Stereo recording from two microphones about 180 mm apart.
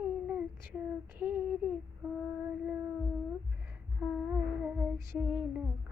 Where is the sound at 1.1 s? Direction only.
10° right (ahead or behind).